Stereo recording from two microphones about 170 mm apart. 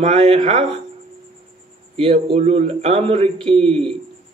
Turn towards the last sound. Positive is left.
turn(degrees=-35)  # may be behind; listen again after turning